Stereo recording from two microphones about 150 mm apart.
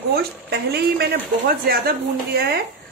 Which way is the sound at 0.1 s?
90° right.